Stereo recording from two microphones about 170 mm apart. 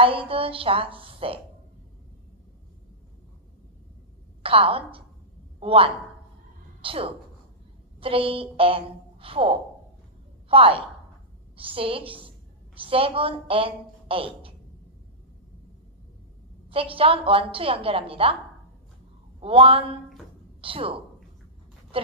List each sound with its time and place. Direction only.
0.0 s a woman's voice: 35° right (ahead or behind)
4.4 s a woman's voice: 35° right (ahead or behind)
16.6 s a woman's voice: 30° right (ahead or behind)
19.4 s a woman's voice: 35° right (ahead or behind)